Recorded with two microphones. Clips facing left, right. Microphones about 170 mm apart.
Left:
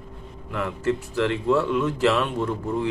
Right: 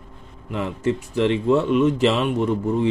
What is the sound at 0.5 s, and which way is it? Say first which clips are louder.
Speech: right 2 dB; 20° right (ahead or behind).